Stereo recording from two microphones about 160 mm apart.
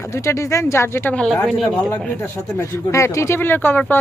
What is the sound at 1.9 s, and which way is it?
Speech, 10° left (ahead or behind).